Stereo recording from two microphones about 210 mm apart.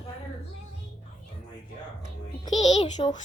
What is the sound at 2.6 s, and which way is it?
Speech, 30° left (ahead or behind).